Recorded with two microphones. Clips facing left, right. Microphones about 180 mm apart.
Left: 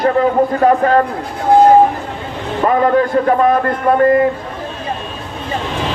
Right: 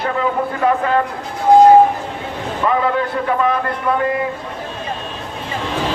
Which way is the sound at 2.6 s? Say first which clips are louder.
Left 5 dB; 45° left (ahead or behind).